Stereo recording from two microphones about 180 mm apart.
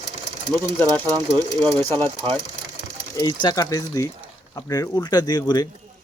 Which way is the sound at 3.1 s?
20° left (ahead or behind).